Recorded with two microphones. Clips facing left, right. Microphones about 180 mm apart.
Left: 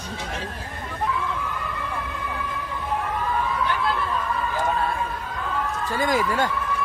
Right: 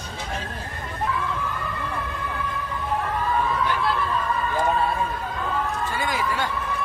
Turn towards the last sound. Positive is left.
turn(degrees=45)  # may be behind; listen again after turning